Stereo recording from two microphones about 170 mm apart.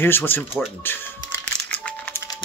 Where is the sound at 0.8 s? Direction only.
10° left (ahead or behind).